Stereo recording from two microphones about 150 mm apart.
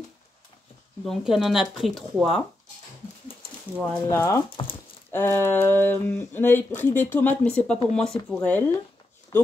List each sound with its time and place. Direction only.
1.0 s speech: centre (ahead or behind)
3.8 s speech: 10° left (ahead or behind)
4.6 s speech: 50° left (ahead or behind)
5.1 s speech: 15° left (ahead or behind)
9.3 s a sound: 20° left (ahead or behind)